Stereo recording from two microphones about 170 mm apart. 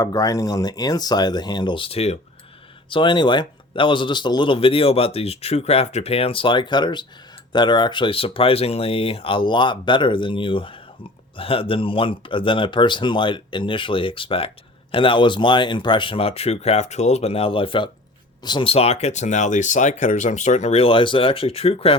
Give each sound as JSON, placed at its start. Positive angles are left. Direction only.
{"t": 0.0, "sound": "speech", "side_deg": 20}